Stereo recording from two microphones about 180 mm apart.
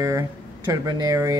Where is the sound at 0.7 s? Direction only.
20° right (ahead or behind).